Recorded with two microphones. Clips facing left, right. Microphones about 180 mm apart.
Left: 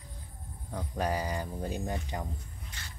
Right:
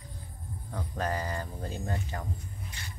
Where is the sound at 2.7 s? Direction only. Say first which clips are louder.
Right 3 dB; 15° right (ahead or behind).